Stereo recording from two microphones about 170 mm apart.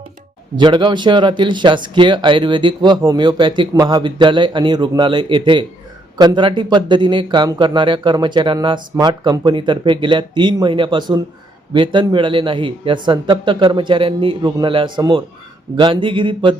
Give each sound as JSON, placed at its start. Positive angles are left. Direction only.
{"t": 0.5, "sound": "speech", "side_deg": -25}